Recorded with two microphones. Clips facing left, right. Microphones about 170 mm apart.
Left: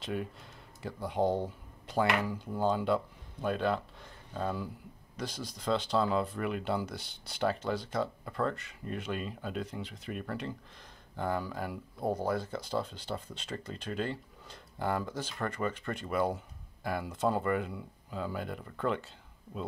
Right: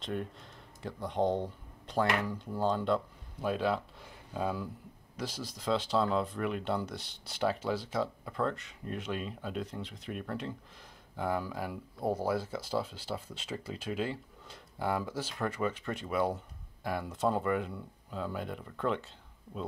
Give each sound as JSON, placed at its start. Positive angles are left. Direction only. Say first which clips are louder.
{"t": 0.0, "sound": "speech", "louder": "left 1 dB", "side_deg": 5}